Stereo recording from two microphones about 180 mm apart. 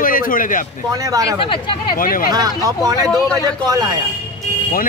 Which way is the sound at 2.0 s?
50° left (ahead or behind).